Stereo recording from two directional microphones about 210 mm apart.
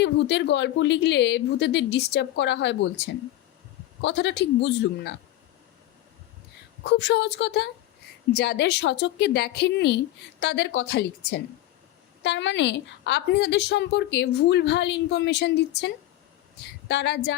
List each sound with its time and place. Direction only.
0.0 s a woman's voice: 55° left (ahead or behind)
4.0 s a woman's voice: 55° left (ahead or behind)
6.9 s a woman's voice: 55° left (ahead or behind)
12.2 s a woman's voice: 60° left (ahead or behind)
16.9 s a woman's voice: 55° left (ahead or behind)